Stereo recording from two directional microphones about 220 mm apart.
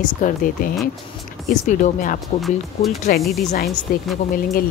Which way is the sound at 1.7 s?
35° left (ahead or behind).